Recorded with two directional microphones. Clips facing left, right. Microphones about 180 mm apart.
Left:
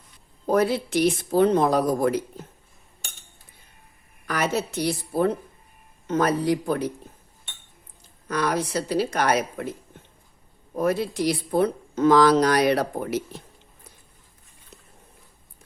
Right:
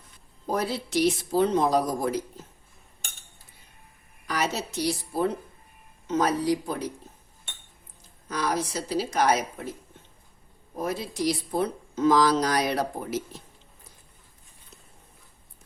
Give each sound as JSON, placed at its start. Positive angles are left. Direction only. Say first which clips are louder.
{"t": 0.5, "sound": "speech", "louder": "left 6 dB", "side_deg": 60}
{"t": 4.3, "sound": "speech", "louder": "left 4 dB", "side_deg": 55}
{"t": 8.3, "sound": "speech", "louder": "left 4 dB", "side_deg": 60}
{"t": 10.8, "sound": "speech", "louder": "left 6 dB", "side_deg": 65}